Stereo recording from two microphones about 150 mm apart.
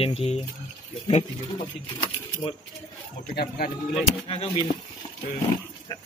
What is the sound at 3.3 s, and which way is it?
Speech, 90° left.